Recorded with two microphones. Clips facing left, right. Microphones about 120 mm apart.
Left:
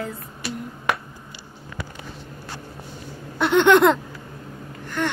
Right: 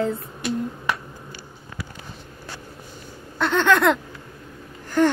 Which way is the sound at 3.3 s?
15° left (ahead or behind).